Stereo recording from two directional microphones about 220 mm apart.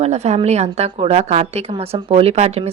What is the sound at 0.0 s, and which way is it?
Speech, 30° right (ahead or behind).